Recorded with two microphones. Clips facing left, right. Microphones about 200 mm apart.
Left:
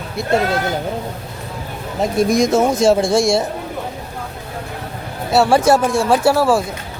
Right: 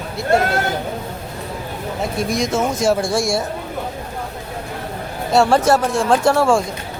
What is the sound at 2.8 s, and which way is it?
Speech, 25° left (ahead or behind).